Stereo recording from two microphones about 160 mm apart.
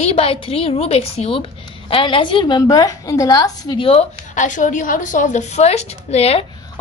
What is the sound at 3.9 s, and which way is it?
A woman's voice, 45° left (ahead or behind).